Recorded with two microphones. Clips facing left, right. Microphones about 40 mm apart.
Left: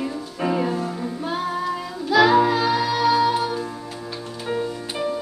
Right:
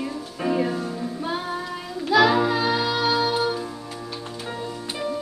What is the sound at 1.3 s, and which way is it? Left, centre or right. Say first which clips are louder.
Music: left 3 dB; centre.